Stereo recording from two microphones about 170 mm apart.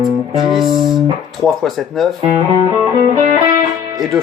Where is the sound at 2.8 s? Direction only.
40° right (ahead or behind).